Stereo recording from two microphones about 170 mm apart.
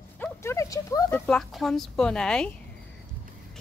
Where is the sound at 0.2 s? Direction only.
15° left (ahead or behind).